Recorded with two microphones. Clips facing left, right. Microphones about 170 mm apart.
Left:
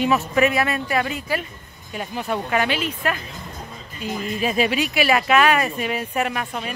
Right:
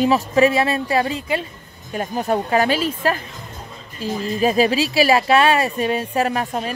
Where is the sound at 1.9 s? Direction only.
40° right (ahead or behind).